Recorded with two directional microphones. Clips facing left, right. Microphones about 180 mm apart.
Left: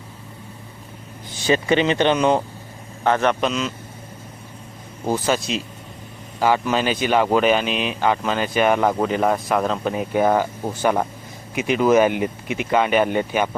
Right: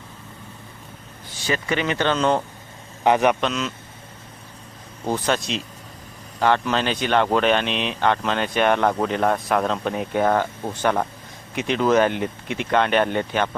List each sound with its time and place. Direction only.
1.5 s speech: 25° left (ahead or behind)
3.0 s a man's voice: 15° right (ahead or behind)
3.4 s speech: centre (ahead or behind)
5.0 s speech: 5° left (ahead or behind)